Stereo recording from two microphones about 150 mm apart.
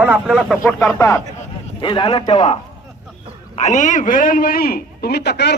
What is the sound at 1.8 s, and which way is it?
Speech, 30° left (ahead or behind).